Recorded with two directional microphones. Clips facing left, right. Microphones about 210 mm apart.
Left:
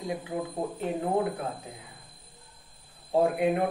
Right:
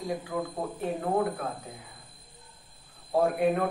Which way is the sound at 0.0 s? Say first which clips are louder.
Right 1 dB; 20° left (ahead or behind).